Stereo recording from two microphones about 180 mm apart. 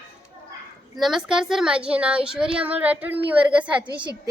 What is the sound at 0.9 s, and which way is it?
Speech, centre (ahead or behind).